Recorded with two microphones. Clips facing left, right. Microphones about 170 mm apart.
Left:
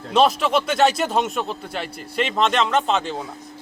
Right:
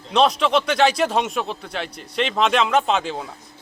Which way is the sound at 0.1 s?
5° left (ahead or behind).